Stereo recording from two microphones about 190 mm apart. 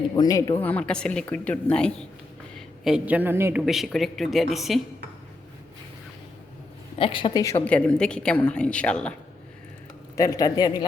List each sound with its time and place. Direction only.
0.2 s a woman's voice: 20° left (ahead or behind); by 3.6 s 10° right (ahead or behind)
3.7 s speech: centre (ahead or behind)
7.0 s a woman's voice: 25° left (ahead or behind); by 9.1 s 5° left (ahead or behind)
10.2 s a woman's voice: 15° left (ahead or behind)